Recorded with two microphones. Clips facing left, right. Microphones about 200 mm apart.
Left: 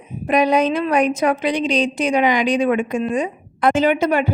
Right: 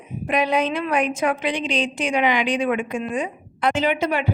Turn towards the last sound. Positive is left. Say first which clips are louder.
# left 5 dB
turn(degrees=45)  # may be behind; listen again after turning